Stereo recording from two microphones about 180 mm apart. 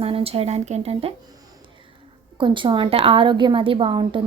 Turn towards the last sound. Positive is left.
turn(degrees=-30)  # may be behind; listen again after turning